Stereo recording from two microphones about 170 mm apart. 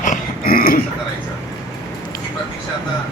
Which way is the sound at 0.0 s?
55° left (ahead or behind).